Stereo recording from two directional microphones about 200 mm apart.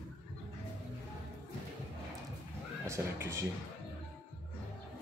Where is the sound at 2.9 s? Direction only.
15° right (ahead or behind).